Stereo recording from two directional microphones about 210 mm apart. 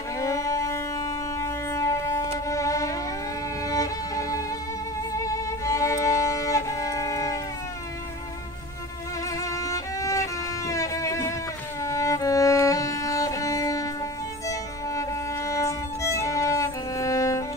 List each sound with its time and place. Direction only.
0.2 s music: 15° left (ahead or behind)
3.6 s violin: 15° left (ahead or behind)
9.4 s violin: 15° left (ahead or behind)
10.7 s music: 15° left (ahead or behind)
11.8 s violin: 15° left (ahead or behind)
14.5 s music: 15° left (ahead or behind)